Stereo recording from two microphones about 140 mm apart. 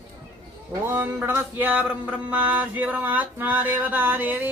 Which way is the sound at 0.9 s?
15° right (ahead or behind).